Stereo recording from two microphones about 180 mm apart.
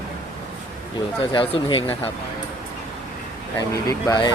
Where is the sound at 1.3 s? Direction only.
30° left (ahead or behind).